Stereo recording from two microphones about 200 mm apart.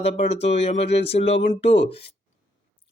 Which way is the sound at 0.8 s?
60° left (ahead or behind).